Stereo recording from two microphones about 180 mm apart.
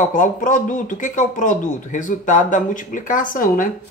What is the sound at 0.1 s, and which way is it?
Speech, 45° left (ahead or behind).